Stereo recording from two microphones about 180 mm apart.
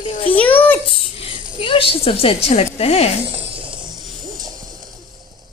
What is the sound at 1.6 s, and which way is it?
Speech, 30° left (ahead or behind).